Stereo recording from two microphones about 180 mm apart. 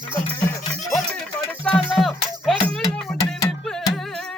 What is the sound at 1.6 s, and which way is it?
Music, centre (ahead or behind).